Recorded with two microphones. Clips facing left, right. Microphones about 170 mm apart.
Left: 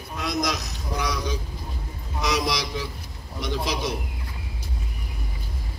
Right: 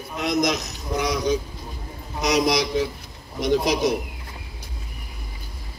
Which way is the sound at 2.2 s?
45° right (ahead or behind).